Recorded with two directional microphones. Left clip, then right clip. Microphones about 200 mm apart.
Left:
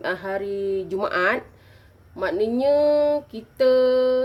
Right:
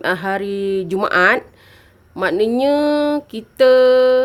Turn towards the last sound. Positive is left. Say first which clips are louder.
# right 7 dB
turn(degrees=-40)  # may be behind; listen again after turning